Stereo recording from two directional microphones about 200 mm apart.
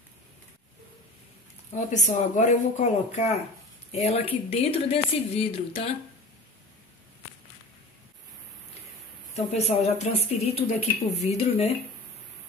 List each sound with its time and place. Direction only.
1.7 s speech: 35° left (ahead or behind)
9.3 s speech: 35° left (ahead or behind)